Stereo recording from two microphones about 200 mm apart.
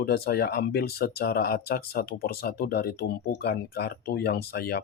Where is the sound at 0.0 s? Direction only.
50° left (ahead or behind).